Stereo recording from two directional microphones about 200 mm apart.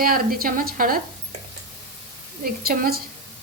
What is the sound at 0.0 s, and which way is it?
Sizzle, 45° right (ahead or behind).